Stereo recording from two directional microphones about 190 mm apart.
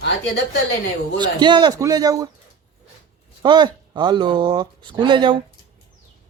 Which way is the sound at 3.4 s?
25° right (ahead or behind).